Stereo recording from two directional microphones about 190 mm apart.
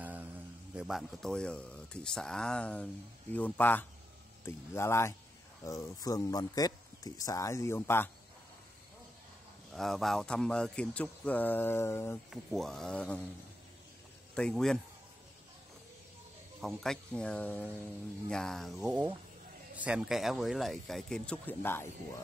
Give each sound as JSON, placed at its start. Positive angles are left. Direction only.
{"t": 0.0, "sound": "a sound", "side_deg": -10}
{"t": 0.7, "sound": "speech", "side_deg": -5}
{"t": 9.7, "sound": "speech", "side_deg": 0}
{"t": 12.3, "sound": "speech", "side_deg": 0}
{"t": 14.3, "sound": "speech", "side_deg": 5}
{"t": 16.6, "sound": "speech", "side_deg": 5}